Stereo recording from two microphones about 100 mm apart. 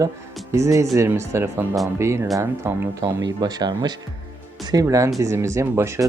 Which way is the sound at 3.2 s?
40° right (ahead or behind).